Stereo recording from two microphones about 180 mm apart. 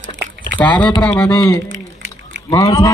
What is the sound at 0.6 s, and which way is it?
A man's voice, 10° left (ahead or behind).